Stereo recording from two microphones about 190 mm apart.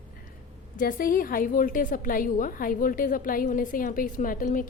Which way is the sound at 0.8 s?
45° left (ahead or behind).